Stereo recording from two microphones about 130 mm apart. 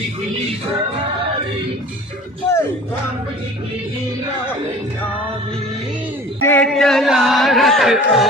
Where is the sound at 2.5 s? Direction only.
20° left (ahead or behind).